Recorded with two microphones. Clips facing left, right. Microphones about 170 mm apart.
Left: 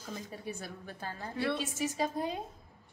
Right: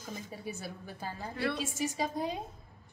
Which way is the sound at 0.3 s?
5° right (ahead or behind).